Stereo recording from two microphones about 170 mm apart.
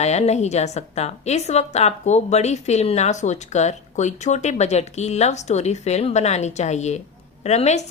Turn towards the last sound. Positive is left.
turn(degrees=40)  # may be behind; listen again after turning